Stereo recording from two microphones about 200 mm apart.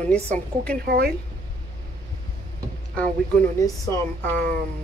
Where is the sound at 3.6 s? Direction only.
10° left (ahead or behind).